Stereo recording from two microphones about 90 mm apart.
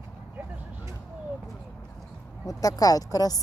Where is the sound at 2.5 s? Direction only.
40° left (ahead or behind).